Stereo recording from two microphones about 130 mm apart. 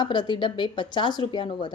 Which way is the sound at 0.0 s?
35° left (ahead or behind).